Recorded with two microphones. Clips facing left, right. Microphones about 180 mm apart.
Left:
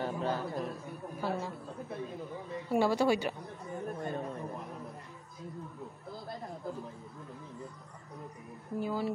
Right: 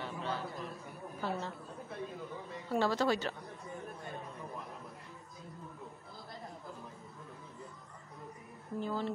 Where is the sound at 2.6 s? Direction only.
10° left (ahead or behind).